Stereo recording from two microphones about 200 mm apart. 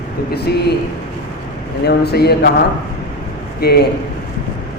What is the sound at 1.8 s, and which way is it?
Speech, 55° left (ahead or behind).